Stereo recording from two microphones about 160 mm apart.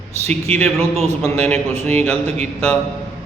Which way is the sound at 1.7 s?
45° right (ahead or behind).